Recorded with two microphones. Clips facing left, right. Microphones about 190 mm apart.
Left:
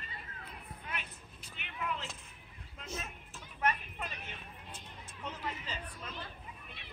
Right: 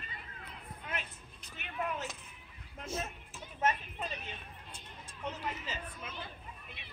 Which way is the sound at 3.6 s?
25° right (ahead or behind).